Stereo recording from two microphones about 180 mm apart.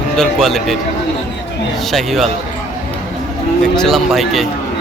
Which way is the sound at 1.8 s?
Centre (ahead or behind).